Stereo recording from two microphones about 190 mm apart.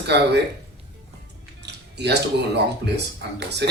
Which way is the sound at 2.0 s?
60° right (ahead or behind).